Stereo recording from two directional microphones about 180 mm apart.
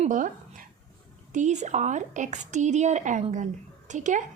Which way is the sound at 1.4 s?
40° right (ahead or behind).